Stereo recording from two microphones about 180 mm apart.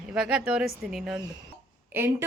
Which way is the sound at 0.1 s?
5° right (ahead or behind).